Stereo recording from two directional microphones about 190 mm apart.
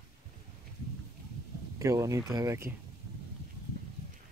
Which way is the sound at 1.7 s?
15° right (ahead or behind).